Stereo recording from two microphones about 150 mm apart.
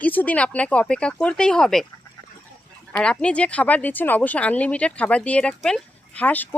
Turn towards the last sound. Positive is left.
turn(degrees=10)  # may be behind; listen again after turning